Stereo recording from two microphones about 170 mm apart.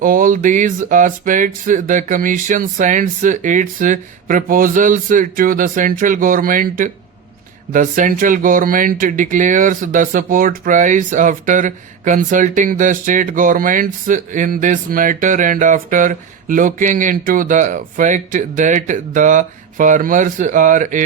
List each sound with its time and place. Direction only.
0.0 s speech: 55° right (ahead or behind)